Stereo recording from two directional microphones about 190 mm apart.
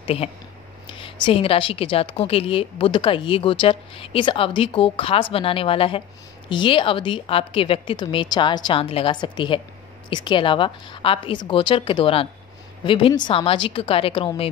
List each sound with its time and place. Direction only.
0.0 s a woman's voice: 30° left (ahead or behind)